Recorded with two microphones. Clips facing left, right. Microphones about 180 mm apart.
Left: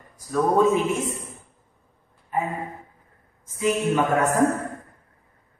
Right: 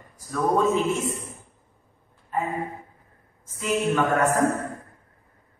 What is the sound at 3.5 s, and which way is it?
Speech, 15° left (ahead or behind).